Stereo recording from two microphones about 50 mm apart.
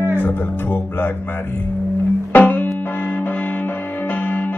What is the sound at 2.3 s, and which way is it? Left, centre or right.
Music, left.